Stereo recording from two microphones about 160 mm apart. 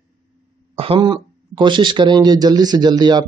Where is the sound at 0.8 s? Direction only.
30° right (ahead or behind).